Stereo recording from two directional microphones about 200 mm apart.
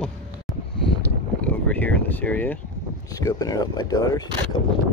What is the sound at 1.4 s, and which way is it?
Speech, 10° left (ahead or behind).